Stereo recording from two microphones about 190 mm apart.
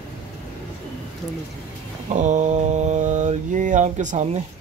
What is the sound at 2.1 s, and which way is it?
Mantra, 40° right (ahead or behind).